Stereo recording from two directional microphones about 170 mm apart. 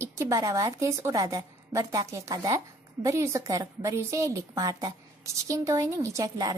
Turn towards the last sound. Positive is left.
turn(degrees=-20)  # may be behind; listen again after turning